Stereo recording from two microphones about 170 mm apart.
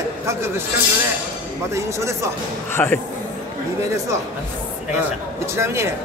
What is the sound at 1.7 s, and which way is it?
Speech, 15° right (ahead or behind).